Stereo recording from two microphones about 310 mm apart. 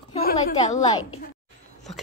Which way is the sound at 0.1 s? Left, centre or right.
Left.